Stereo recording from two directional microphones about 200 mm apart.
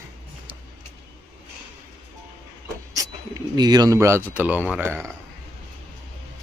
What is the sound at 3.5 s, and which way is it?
A man's voice, 20° right (ahead or behind).